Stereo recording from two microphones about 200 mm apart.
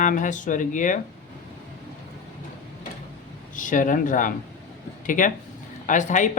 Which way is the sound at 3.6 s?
40° left (ahead or behind).